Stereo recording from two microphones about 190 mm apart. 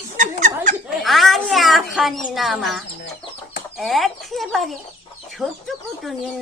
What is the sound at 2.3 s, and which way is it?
Speech, centre (ahead or behind).